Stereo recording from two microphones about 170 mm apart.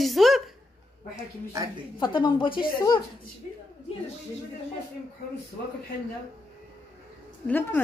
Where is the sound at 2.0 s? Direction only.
30° left (ahead or behind).